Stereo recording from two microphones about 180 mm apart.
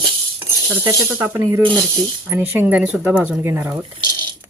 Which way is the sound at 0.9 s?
15° right (ahead or behind).